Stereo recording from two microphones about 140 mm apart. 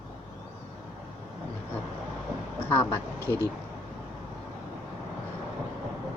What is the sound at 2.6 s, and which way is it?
Speech, 20° left (ahead or behind).